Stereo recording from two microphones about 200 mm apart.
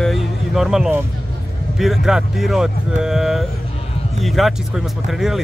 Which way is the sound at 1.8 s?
Centre (ahead or behind).